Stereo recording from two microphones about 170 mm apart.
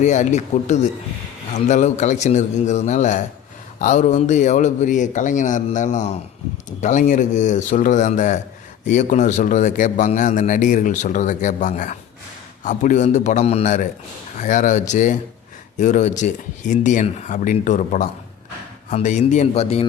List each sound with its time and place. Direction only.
0.0 s a man's voice: 45° left (ahead or behind)